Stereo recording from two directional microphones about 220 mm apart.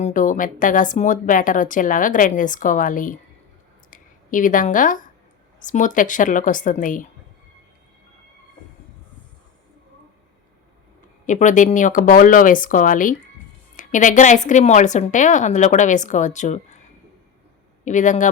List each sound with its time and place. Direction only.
0.0 s speech: 35° left (ahead or behind)
11.3 s speech: 35° left (ahead or behind)
17.8 s speech: 35° left (ahead or behind)